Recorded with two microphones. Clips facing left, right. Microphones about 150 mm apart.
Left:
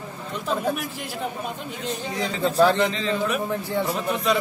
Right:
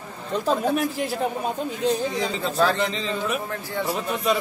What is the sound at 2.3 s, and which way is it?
A man's voice, centre (ahead or behind).